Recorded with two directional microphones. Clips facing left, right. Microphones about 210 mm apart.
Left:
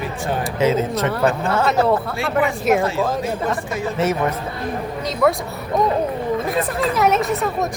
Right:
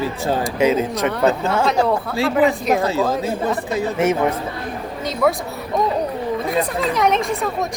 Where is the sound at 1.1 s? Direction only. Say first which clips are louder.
Right 2 dB; centre (ahead or behind).